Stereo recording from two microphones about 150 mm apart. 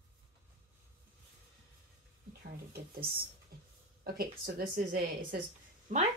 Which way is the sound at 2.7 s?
90° right.